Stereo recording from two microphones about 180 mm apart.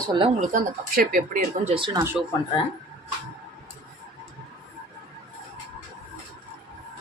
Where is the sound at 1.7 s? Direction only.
25° right (ahead or behind).